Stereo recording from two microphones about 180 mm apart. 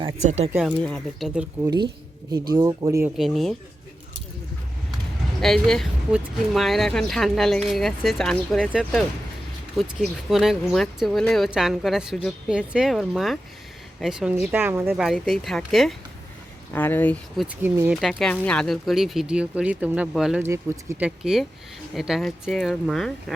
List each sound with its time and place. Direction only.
0.3 s speech: 40° right (ahead or behind)
0.6 s speech: 5° left (ahead or behind)
2.5 s speech: 20° right (ahead or behind)
3.2 s speech: centre (ahead or behind)
5.4 s speech: centre (ahead or behind)
15.0 s speech: centre (ahead or behind)
17.4 s speech: 10° right (ahead or behind)